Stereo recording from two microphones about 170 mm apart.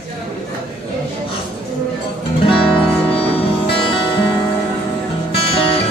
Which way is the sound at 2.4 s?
30° left (ahead or behind).